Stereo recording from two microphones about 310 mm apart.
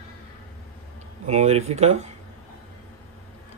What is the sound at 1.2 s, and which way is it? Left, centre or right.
Speech, right.